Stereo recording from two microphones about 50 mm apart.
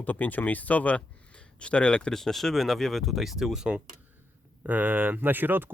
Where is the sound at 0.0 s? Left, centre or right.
Left; by 2.1 s centre.